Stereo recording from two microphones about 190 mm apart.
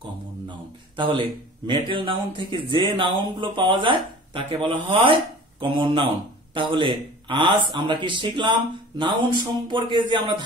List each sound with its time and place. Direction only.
0.5 s speech: 25° right (ahead or behind)